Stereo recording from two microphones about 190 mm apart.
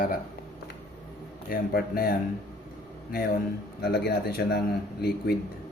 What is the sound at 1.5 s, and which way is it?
Speech, 55° left (ahead or behind).